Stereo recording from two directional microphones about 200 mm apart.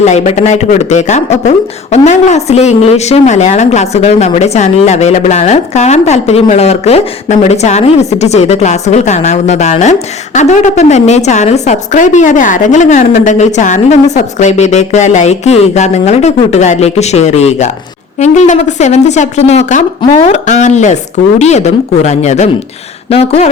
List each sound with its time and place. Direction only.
0.0 s speech: 35° left (ahead or behind)